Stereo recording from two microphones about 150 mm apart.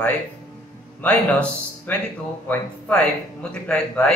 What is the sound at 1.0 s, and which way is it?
A man's voice, 10° left (ahead or behind).